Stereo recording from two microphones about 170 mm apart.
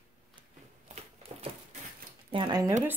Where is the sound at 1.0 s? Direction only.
40° right (ahead or behind).